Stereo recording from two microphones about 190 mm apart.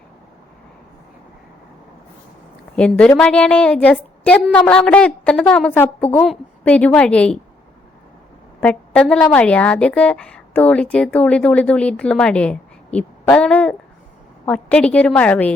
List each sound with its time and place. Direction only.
2.7 s a woman's voice: 5° left (ahead or behind)
8.6 s a woman's voice: 5° left (ahead or behind)